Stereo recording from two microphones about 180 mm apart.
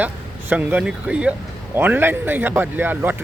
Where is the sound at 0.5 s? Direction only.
10° right (ahead or behind).